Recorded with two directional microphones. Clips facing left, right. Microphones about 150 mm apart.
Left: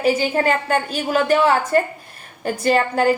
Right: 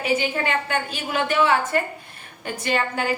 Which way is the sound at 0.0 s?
35° left (ahead or behind).